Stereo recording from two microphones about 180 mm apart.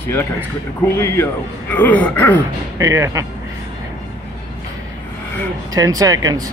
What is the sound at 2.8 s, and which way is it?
Speech, 20° right (ahead or behind).